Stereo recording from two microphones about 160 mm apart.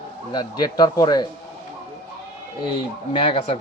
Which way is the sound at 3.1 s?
35° left (ahead or behind).